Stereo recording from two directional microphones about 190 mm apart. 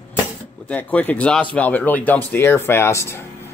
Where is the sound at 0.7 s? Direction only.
10° left (ahead or behind).